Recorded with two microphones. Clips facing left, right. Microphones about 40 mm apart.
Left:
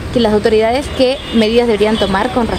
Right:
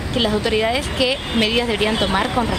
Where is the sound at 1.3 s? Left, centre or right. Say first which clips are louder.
Left 7 dB; left.